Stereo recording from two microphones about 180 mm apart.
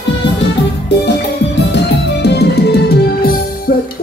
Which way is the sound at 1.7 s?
65° left (ahead or behind).